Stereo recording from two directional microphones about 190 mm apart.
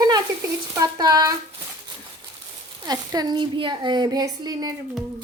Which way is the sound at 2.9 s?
20° right (ahead or behind).